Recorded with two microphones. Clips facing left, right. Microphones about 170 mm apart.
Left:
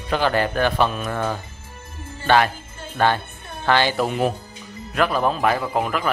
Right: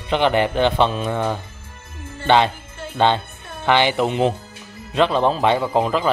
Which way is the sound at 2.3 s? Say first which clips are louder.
Right 2 dB; 20° right (ahead or behind).